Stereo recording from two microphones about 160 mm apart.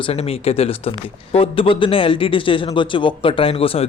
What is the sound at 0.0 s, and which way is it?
Speech, 35° left (ahead or behind).